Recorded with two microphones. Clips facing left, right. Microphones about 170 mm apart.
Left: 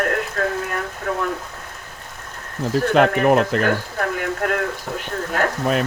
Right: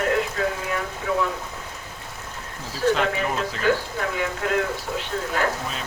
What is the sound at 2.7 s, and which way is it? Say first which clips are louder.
Speech: left 5 dB; 60° left (ahead or behind).